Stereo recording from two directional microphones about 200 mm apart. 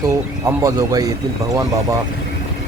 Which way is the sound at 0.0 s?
15° right (ahead or behind).